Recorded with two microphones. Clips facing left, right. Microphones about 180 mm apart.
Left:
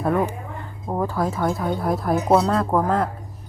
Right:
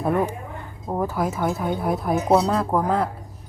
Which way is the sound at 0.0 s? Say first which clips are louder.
Left 1 dB; 5° right (ahead or behind).